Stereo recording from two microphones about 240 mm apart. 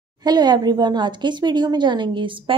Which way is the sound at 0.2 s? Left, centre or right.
Centre.